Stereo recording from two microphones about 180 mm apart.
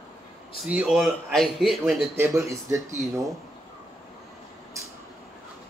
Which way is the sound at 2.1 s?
15° right (ahead or behind).